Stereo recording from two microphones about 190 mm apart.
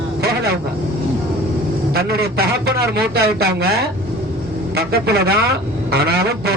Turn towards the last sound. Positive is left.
turn(degrees=-55)  # may be behind; listen again after turning